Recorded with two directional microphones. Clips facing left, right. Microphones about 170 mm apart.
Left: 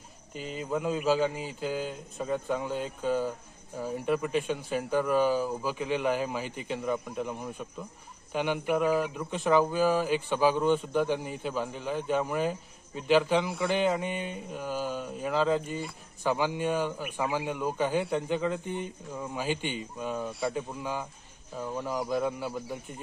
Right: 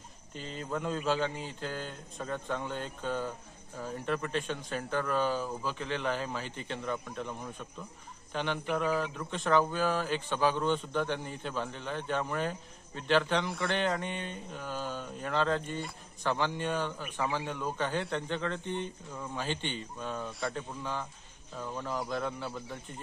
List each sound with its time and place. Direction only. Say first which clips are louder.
0.3 s speech: left 4 dB; 5° left (ahead or behind)